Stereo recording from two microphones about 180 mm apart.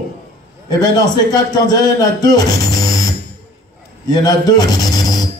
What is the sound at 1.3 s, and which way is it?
Speech, 20° left (ahead or behind).